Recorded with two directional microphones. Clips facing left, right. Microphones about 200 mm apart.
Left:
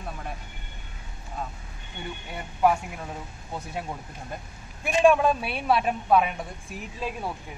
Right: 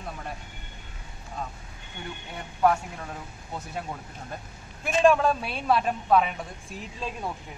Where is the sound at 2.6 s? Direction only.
10° left (ahead or behind).